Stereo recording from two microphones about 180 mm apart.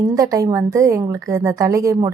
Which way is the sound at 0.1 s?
20° right (ahead or behind).